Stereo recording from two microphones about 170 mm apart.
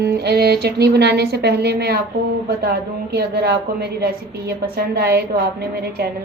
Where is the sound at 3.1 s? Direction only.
70° right (ahead or behind).